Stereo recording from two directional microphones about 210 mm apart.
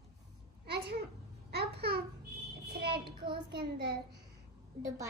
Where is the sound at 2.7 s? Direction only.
50° right (ahead or behind).